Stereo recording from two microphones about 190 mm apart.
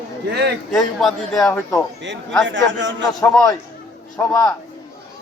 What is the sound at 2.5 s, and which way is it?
Speech, 75° right (ahead or behind).